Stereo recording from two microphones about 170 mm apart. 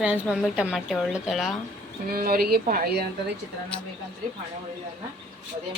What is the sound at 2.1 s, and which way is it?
Speech, 60° right (ahead or behind).